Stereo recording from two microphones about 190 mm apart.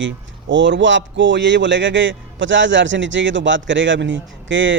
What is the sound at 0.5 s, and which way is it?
A man's voice, 75° right (ahead or behind).